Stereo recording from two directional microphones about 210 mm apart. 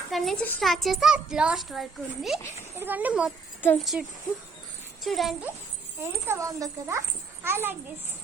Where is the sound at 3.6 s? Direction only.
5° left (ahead or behind).